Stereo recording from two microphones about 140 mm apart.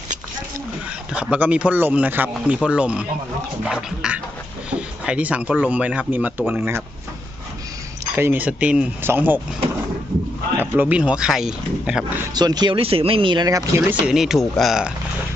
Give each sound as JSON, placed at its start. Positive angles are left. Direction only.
{"t": 1.1, "sound": "speech", "side_deg": -10}
{"t": 8.1, "sound": "speech", "side_deg": -15}
{"t": 10.6, "sound": "speech", "side_deg": -10}
{"t": 12.3, "sound": "speech", "side_deg": -30}
{"t": 14.0, "sound": "speech", "side_deg": -5}